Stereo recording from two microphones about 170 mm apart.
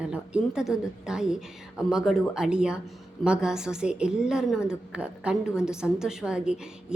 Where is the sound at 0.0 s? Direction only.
5° right (ahead or behind).